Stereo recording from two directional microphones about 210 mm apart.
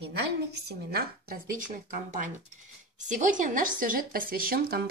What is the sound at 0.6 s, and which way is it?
Speech, 45° right (ahead or behind).